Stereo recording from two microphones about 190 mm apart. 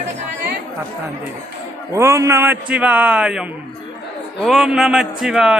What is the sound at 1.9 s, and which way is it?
A man's voice, 15° right (ahead or behind).